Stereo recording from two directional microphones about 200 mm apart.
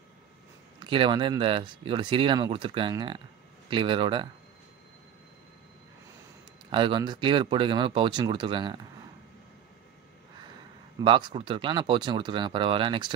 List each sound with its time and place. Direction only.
0.7 s speech: 25° right (ahead or behind)
6.7 s speech: 25° right (ahead or behind)
11.0 s speech: 20° right (ahead or behind)